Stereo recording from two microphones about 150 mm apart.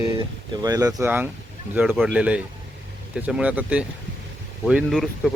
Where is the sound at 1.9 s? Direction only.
Centre (ahead or behind).